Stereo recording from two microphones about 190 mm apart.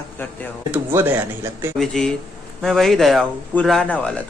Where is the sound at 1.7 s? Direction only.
Centre (ahead or behind).